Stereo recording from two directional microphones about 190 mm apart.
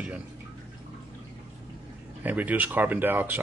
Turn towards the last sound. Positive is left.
turn(degrees=-10)  # may be behind; listen again after turning